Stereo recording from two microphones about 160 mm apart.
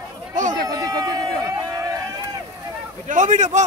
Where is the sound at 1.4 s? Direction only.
20° right (ahead or behind).